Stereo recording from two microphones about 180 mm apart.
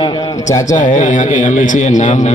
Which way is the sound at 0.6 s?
45° left (ahead or behind).